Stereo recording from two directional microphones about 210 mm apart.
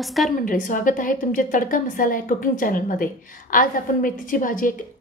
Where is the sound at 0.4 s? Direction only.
40° left (ahead or behind).